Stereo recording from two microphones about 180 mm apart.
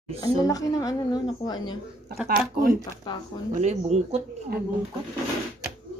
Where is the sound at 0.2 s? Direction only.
20° left (ahead or behind).